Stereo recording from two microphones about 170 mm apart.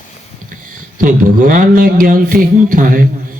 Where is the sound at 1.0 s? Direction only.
50° right (ahead or behind).